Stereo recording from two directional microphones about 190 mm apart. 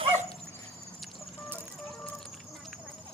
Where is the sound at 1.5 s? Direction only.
5° left (ahead or behind).